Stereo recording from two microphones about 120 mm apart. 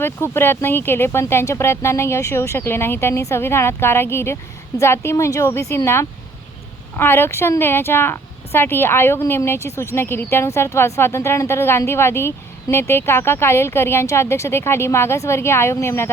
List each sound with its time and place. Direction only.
0.0 s a woman's voice: 20° left (ahead or behind)